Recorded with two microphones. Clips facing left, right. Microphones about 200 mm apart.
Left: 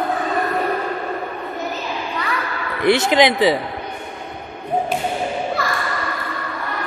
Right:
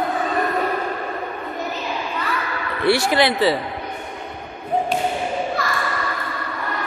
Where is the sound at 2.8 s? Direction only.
20° left (ahead or behind).